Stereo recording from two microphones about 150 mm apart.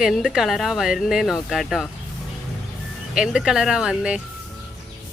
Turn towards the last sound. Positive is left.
turn(degrees=-5)  # may be behind; listen again after turning